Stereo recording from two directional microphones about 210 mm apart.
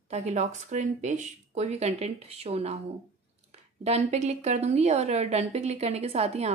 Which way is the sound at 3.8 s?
30° right (ahead or behind).